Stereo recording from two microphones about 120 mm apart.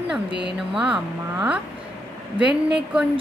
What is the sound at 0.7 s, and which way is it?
A woman's voice, 5° right (ahead or behind).